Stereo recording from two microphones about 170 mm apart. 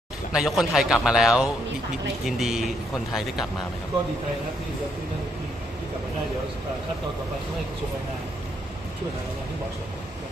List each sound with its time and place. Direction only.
0.3 s speech: centre (ahead or behind)